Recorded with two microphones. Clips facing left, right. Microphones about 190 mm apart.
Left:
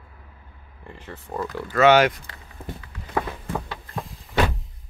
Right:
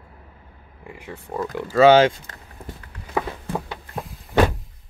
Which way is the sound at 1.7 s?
25° right (ahead or behind).